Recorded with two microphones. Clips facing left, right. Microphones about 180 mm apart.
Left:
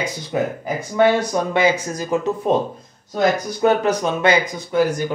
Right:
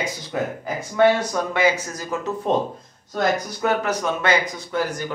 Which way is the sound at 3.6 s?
20° left (ahead or behind).